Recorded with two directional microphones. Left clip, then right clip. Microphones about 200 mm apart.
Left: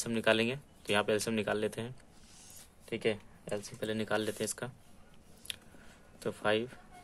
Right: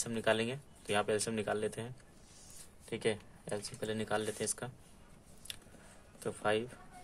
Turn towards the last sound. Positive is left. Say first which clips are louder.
# left 2 dB
turn(degrees=10)  # may be behind; listen again after turning